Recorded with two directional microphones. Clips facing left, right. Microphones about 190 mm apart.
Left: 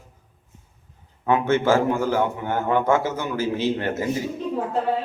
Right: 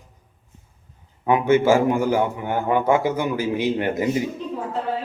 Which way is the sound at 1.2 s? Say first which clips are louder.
Right 3 dB; 10° right (ahead or behind).